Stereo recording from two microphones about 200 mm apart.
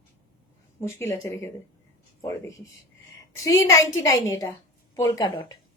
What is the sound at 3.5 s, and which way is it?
A woman's voice, 15° left (ahead or behind).